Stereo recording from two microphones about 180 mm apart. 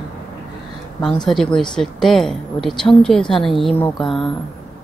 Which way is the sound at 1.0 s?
5° left (ahead or behind).